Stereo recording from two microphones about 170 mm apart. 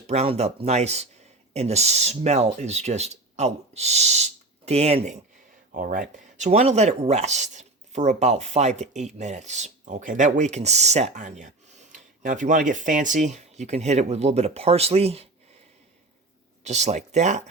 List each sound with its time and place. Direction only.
0.1 s speech: 40° right (ahead or behind)
5.7 s speech: 55° right (ahead or behind); by 15.3 s 35° right (ahead or behind)
16.6 s speech: 40° right (ahead or behind)